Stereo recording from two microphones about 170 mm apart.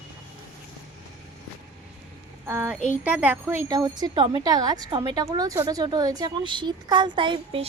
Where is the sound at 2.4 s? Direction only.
10° right (ahead or behind).